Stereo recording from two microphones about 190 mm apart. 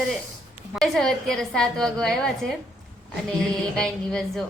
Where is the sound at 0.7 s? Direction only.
Centre (ahead or behind).